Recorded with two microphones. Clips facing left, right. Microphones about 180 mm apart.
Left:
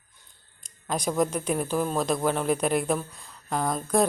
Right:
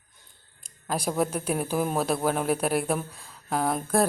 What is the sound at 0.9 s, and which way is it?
A man's voice, 5° right (ahead or behind).